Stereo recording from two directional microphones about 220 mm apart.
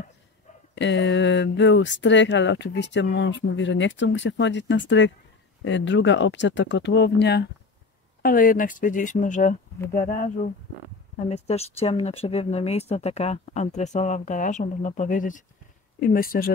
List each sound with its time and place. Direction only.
0.7 s speech: 55° left (ahead or behind)